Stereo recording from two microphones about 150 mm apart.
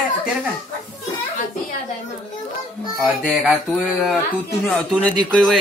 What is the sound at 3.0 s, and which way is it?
Speech, centre (ahead or behind).